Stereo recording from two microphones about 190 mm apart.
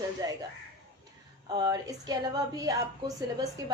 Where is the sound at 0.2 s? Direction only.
20° right (ahead or behind).